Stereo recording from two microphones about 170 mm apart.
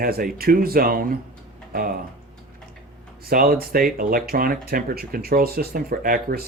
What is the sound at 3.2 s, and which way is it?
Speech, 60° right (ahead or behind).